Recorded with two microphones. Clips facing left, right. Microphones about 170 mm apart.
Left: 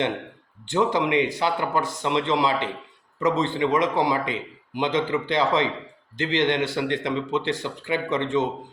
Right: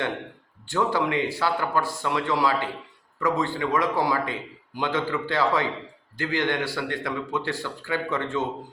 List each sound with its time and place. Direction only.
0.6 s a man's voice: 20° left (ahead or behind)